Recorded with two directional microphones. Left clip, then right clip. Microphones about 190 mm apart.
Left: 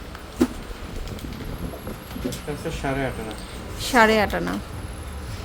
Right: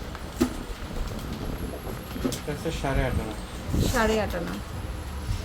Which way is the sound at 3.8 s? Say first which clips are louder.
Left 8 dB; 35° left (ahead or behind).